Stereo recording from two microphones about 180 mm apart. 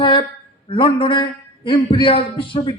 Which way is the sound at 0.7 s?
30° left (ahead or behind).